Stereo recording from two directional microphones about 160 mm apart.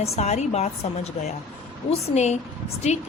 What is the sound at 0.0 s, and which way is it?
A woman's voice, 45° left (ahead or behind).